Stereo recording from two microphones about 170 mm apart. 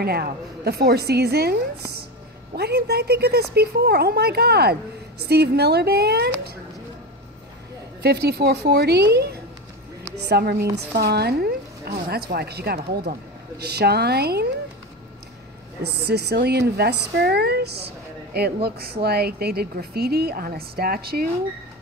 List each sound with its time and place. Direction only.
0.0 s a woman's voice: 65° right (ahead or behind)
8.0 s a woman's voice: 70° right (ahead or behind)
15.8 s a woman's voice: 75° right (ahead or behind)